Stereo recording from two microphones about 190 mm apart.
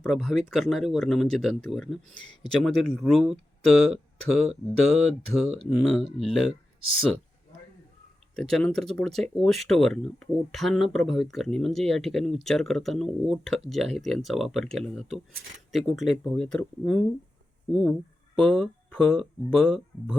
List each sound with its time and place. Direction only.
0.0 s speech: centre (ahead or behind)
2.1 s speech: 25° left (ahead or behind)
2.5 s speech: centre (ahead or behind)
8.4 s speech: 5° left (ahead or behind)
18.4 s speech: 5° left (ahead or behind)